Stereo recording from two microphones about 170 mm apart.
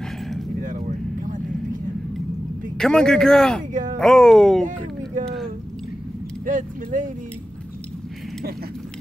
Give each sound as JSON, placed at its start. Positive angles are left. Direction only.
{"t": 0.6, "sound": "vehicle", "side_deg": -50}
{"t": 2.8, "sound": "speech", "side_deg": 5}
{"t": 6.4, "sound": "speech", "side_deg": -50}